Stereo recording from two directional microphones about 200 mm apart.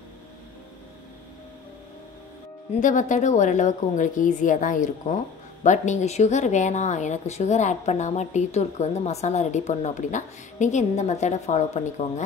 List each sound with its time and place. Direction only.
2.7 s a woman's voice: 40° left (ahead or behind)